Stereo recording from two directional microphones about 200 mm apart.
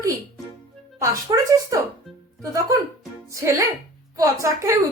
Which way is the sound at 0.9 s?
15° right (ahead or behind).